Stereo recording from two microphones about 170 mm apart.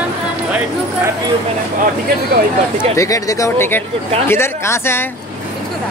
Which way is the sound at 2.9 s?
20° left (ahead or behind).